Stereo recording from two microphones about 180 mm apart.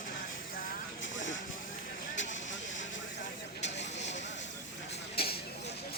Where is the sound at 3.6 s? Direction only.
75° left (ahead or behind).